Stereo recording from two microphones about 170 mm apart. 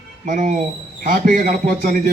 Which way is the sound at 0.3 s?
50° right (ahead or behind).